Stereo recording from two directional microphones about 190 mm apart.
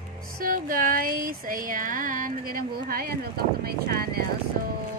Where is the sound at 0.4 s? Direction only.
45° right (ahead or behind).